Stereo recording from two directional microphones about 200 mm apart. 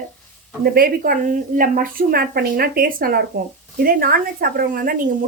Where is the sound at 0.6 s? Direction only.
50° right (ahead or behind).